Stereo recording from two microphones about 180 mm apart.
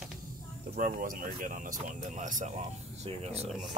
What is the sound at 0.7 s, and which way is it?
Speech, 50° right (ahead or behind).